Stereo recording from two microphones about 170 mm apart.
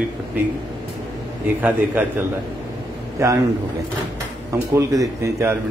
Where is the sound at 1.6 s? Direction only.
10° right (ahead or behind).